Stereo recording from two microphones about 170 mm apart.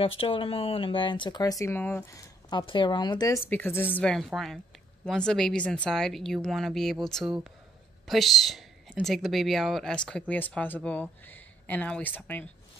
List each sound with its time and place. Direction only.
0.0 s speech: 35° left (ahead or behind); by 2.6 s 15° left (ahead or behind)
2.6 s speech: 30° left (ahead or behind)
3.4 s a woman's voice: 10° left (ahead or behind)